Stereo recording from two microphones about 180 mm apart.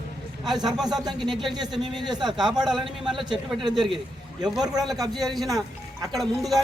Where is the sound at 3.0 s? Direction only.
Centre (ahead or behind).